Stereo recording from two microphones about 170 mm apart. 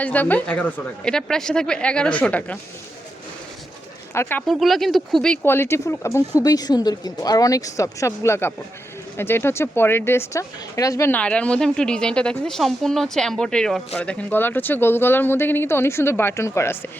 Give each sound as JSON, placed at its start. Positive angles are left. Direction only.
{"t": 0.0, "sound": "speech", "side_deg": 10}
{"t": 4.1, "sound": "speech", "side_deg": 15}
{"t": 4.4, "sound": "speech", "side_deg": 0}